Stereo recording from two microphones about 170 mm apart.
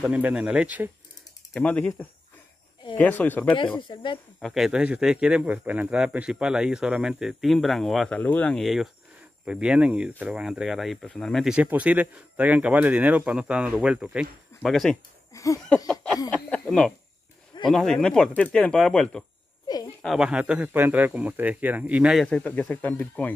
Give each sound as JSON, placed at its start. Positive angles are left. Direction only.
{"t": 0.0, "sound": "speech", "side_deg": -10}
{"t": 1.5, "sound": "speech", "side_deg": 10}
{"t": 3.5, "sound": "speech", "side_deg": 30}
{"t": 4.4, "sound": "speech", "side_deg": 0}
{"t": 15.3, "sound": "a sound", "side_deg": 20}
{"t": 15.9, "sound": "a sound", "side_deg": 5}
{"t": 17.6, "sound": "speech", "side_deg": 0}
{"t": 19.7, "sound": "a sound", "side_deg": 25}
{"t": 20.0, "sound": "speech", "side_deg": 0}